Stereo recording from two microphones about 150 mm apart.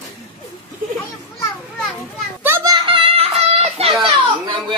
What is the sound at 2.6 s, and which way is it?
Child singing, 35° right (ahead or behind).